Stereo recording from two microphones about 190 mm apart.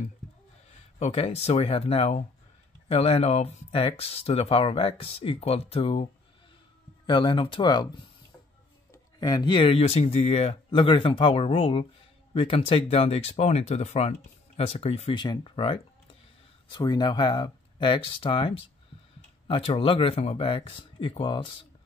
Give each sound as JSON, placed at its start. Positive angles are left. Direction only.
{"t": 0.9, "sound": "speech", "side_deg": 35}
{"t": 7.1, "sound": "speech", "side_deg": 25}
{"t": 8.9, "sound": "speech", "side_deg": 20}